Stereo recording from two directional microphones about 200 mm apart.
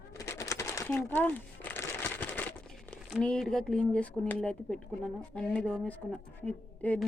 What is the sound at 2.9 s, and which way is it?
Speech, 5° left (ahead or behind).